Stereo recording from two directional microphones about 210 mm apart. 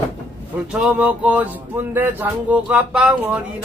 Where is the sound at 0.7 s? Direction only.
5° right (ahead or behind).